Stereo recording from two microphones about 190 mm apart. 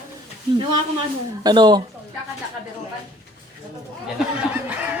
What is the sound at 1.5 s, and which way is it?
Speech, 20° right (ahead or behind).